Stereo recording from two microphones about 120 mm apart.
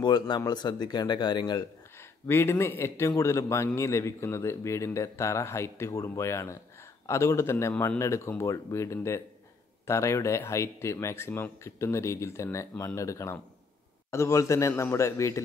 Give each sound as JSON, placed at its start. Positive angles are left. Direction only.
{"t": 0.0, "sound": "speech", "side_deg": 40}
{"t": 2.0, "sound": "a man's voice", "side_deg": 20}